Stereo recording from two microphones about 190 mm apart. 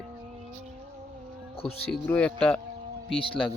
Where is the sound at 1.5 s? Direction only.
30° left (ahead or behind).